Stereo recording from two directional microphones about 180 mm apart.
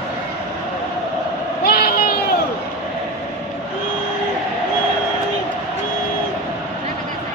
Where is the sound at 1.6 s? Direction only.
60° left (ahead or behind).